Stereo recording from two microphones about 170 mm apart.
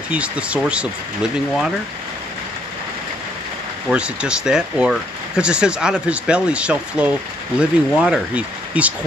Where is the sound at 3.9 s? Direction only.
5° right (ahead or behind).